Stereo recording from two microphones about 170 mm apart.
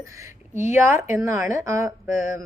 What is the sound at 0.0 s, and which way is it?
Speech, 15° right (ahead or behind).